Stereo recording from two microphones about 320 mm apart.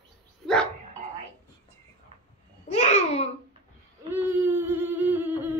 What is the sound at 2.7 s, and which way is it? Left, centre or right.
Babbling, centre.